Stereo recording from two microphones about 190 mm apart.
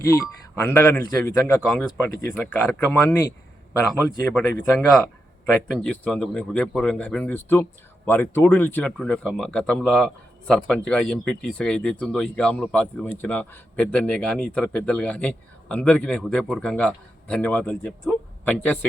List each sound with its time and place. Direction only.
0.0 s speech: 15° left (ahead or behind)
1.6 s a man's voice: 5° left (ahead or behind)
4.4 s a man's voice: 5° left (ahead or behind)